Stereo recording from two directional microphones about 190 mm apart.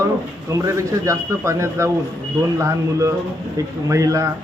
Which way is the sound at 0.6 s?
15° right (ahead or behind).